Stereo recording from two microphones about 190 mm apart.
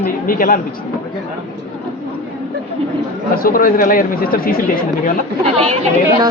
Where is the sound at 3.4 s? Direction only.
50° left (ahead or behind).